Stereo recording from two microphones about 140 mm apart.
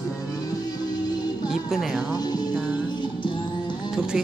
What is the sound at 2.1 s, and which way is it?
Music, 30° left (ahead or behind).